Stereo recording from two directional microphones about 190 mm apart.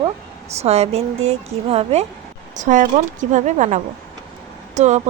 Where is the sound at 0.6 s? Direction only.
35° right (ahead or behind).